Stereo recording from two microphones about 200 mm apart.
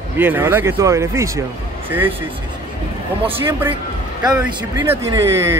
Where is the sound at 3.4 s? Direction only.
10° right (ahead or behind).